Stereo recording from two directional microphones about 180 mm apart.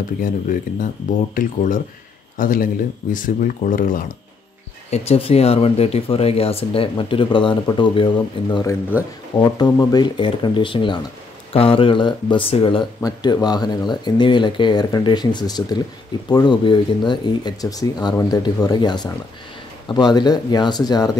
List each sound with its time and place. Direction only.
0.2 s speech: 50° left (ahead or behind)
4.9 s speech: 35° left (ahead or behind)